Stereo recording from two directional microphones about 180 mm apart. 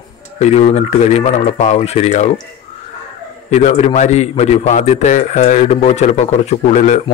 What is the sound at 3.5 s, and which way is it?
A man's voice, 40° left (ahead or behind).